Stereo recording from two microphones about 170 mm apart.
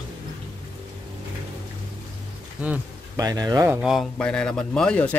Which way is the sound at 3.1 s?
20° right (ahead or behind).